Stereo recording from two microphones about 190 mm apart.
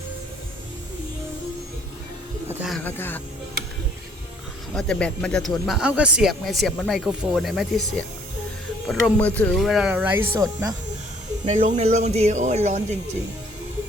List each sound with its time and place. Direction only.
2.5 s a sound: 10° right (ahead or behind)
2.7 s speech: 10° left (ahead or behind)
4.7 s speech: 5° left (ahead or behind); by 10.8 s 15° right (ahead or behind)
11.4 s speech: 35° right (ahead or behind)